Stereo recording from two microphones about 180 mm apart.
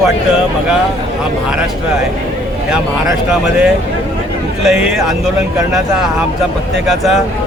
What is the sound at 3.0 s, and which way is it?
Speech, centre (ahead or behind).